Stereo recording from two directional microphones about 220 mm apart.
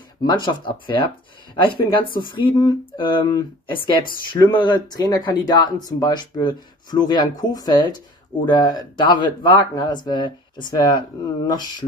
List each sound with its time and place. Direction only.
0.2 s speech: 20° left (ahead or behind)